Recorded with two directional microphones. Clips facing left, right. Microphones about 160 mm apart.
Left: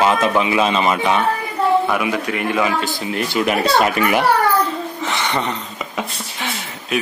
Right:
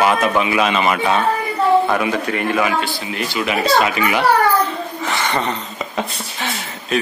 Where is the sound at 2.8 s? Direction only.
45° left (ahead or behind).